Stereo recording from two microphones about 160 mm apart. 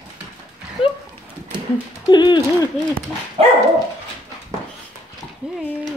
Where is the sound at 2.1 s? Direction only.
25° left (ahead or behind).